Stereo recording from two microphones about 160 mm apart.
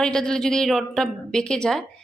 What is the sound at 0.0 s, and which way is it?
A woman's voice, 5° left (ahead or behind).